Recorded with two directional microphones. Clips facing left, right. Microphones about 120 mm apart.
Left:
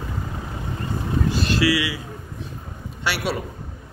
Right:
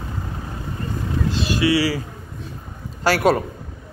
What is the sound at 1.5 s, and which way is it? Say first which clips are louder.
Vehicle: right 2 dB; 20° right (ahead or behind).